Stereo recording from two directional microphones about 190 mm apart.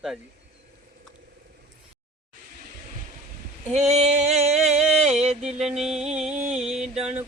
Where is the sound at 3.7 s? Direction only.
35° right (ahead or behind).